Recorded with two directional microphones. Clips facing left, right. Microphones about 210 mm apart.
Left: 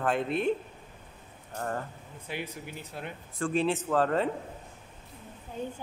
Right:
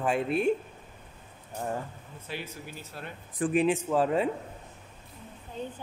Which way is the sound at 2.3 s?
15° left (ahead or behind).